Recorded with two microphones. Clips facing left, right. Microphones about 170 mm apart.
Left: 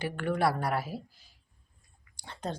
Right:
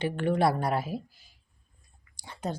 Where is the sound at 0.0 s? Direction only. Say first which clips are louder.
Right 3 dB; 25° right (ahead or behind).